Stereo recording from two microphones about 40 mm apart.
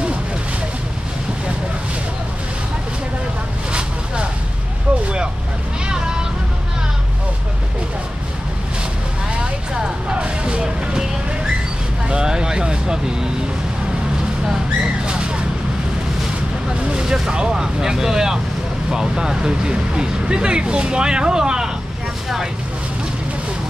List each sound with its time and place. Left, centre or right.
5.9 s meow: centre
9.4 s music: right
12.1 s vehicle: centre
15.0 s vehicle: right
16.9 s a sound: centre
17.3 s vehicle: centre
18.9 s music: centre